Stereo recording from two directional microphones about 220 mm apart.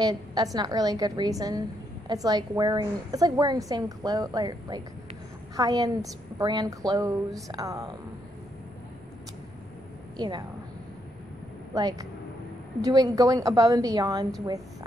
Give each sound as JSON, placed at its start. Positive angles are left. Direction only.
{"t": 0.0, "sound": "a woman's voice", "side_deg": -20}
{"t": 10.1, "sound": "a woman's voice", "side_deg": -20}
{"t": 11.7, "sound": "a woman's voice", "side_deg": -15}